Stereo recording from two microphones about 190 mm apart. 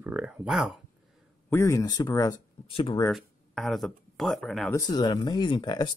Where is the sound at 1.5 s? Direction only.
15° left (ahead or behind).